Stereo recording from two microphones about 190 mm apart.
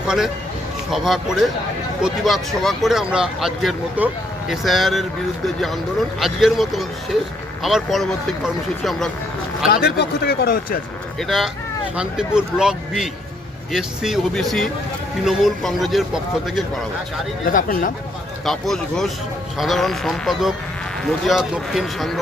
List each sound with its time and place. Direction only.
0.0 s speech: 5° right (ahead or behind)
9.6 s speech: 55° left (ahead or behind)
11.2 s speech: centre (ahead or behind)
17.5 s speech: 45° left (ahead or behind)
18.4 s speech: centre (ahead or behind)